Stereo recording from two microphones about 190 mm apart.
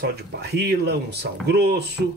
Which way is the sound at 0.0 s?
60° right (ahead or behind).